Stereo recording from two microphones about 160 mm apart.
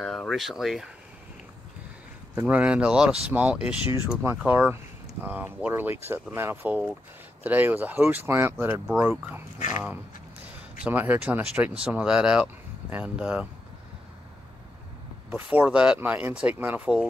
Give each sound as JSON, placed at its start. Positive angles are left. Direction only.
{"t": 0.0, "sound": "speech", "side_deg": 5}
{"t": 2.3, "sound": "speech", "side_deg": -10}
{"t": 9.6, "sound": "speech", "side_deg": 50}
{"t": 10.4, "sound": "speech", "side_deg": -10}
{"t": 15.2, "sound": "speech", "side_deg": -10}